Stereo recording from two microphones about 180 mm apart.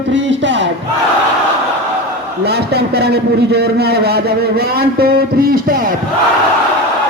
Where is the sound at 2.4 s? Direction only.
65° right (ahead or behind).